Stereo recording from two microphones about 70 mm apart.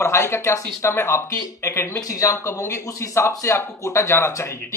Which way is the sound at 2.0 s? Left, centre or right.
Left.